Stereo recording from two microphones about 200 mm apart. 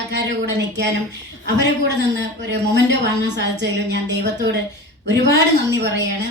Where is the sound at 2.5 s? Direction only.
60° right (ahead or behind).